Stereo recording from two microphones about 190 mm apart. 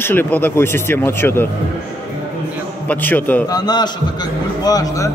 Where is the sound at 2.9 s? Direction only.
10° left (ahead or behind).